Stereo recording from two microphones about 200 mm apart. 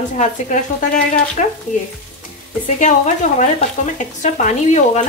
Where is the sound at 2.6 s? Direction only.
40° left (ahead or behind).